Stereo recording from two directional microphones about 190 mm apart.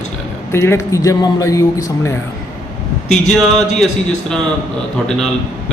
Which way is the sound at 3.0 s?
Centre (ahead or behind).